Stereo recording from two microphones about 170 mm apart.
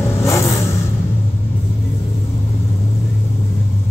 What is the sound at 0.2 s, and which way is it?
Vehicle, 15° left (ahead or behind).